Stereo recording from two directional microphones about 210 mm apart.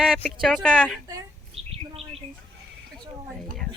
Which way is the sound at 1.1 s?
30° right (ahead or behind).